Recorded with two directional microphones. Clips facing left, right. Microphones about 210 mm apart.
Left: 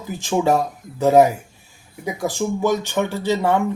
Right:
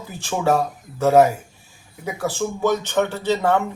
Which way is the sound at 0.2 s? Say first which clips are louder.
Left 2 dB; 15° left (ahead or behind).